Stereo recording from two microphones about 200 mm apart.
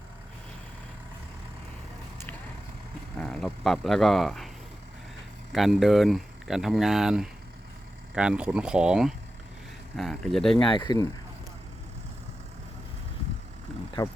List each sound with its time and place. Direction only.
3.2 s speech: centre (ahead or behind)
10.7 s speech: 20° left (ahead or behind)
13.7 s vehicle: 5° left (ahead or behind)